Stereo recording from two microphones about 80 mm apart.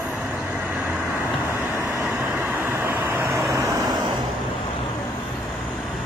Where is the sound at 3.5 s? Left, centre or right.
Right.